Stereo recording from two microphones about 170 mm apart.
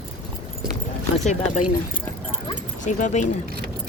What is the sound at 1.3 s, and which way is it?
Speech, 45° left (ahead or behind).